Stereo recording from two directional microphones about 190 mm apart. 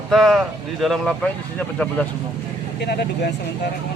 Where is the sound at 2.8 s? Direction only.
60° left (ahead or behind).